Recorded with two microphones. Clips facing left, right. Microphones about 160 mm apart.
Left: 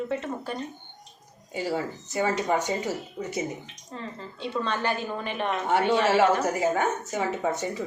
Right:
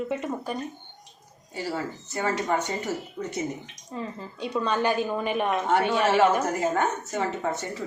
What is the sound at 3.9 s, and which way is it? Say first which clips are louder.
Speech: right 3 dB; 10° right (ahead or behind).